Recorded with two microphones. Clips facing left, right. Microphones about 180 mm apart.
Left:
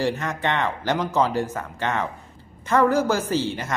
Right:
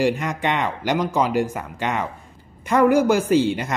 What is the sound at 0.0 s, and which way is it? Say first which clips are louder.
Speech: right 3 dB; 15° right (ahead or behind).